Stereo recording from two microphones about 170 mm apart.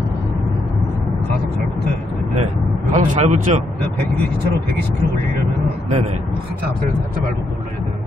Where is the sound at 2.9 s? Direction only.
50° right (ahead or behind).